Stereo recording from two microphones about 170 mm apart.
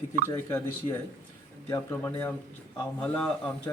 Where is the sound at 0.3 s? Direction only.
15° left (ahead or behind).